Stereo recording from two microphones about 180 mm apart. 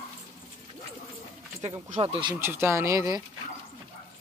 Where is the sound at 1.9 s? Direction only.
30° right (ahead or behind).